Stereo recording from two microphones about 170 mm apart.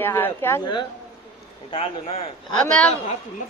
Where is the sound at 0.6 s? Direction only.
25° left (ahead or behind).